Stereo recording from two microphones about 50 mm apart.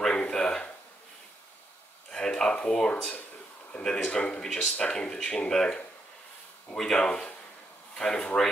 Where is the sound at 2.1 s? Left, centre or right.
Centre.